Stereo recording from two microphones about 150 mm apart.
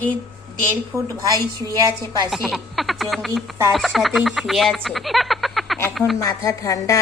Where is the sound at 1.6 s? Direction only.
25° right (ahead or behind).